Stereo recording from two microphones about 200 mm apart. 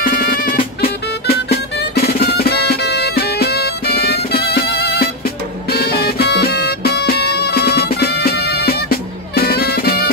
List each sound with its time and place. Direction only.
0.0 s music: 45° left (ahead or behind)